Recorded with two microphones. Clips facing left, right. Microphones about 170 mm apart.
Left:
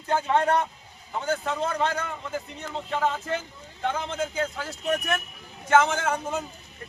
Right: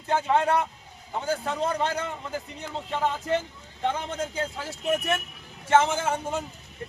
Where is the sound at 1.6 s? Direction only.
35° right (ahead or behind).